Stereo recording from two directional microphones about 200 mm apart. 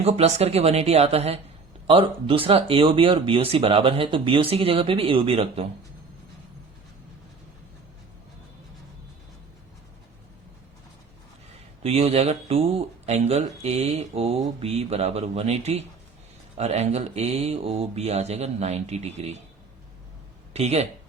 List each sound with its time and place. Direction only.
0.0 s speech: 30° right (ahead or behind)
11.8 s speech: 30° right (ahead or behind)
20.5 s speech: 30° right (ahead or behind)